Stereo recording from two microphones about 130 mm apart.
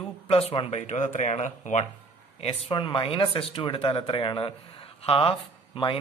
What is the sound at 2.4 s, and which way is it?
Speech, 45° left (ahead or behind).